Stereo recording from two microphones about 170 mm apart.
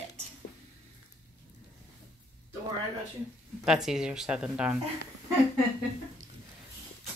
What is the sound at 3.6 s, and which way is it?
Speech, 5° right (ahead or behind).